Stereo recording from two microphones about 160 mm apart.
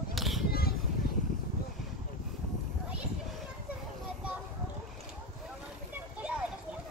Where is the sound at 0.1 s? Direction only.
Centre (ahead or behind).